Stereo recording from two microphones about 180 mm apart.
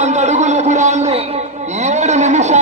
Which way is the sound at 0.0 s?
40° right (ahead or behind).